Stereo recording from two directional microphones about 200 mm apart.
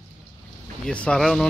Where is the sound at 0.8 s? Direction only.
5° left (ahead or behind).